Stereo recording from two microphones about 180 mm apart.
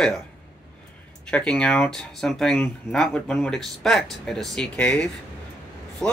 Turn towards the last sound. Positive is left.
turn(degrees=5)  # may be behind; listen again after turning